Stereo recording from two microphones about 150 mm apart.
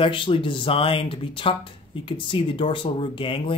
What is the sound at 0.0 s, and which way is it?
Speech, 35° left (ahead or behind).